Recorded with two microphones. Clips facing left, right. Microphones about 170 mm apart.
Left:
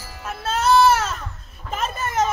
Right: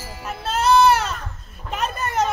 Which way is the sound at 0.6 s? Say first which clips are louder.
Even; centre (ahead or behind).